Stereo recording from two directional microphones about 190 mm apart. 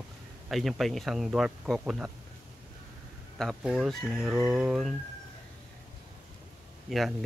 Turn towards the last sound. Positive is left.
turn(degrees=0)  # may be behind; listen again after turning